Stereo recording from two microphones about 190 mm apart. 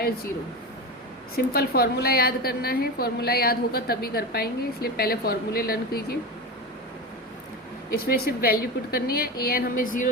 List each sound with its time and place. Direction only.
1.5 s a woman's voice: 55° left (ahead or behind)
7.9 s a woman's voice: 55° left (ahead or behind)